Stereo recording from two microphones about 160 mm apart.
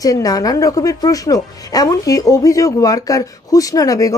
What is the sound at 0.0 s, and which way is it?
Speech, 20° left (ahead or behind).